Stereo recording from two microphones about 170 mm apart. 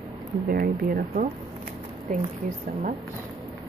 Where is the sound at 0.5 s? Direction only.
60° right (ahead or behind).